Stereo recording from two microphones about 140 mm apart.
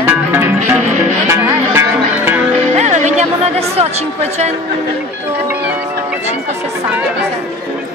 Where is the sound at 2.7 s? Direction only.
55° right (ahead or behind).